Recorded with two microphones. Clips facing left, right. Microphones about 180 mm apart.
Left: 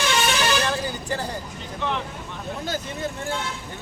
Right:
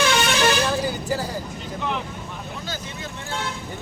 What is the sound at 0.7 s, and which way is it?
Vehicle, 5° right (ahead or behind).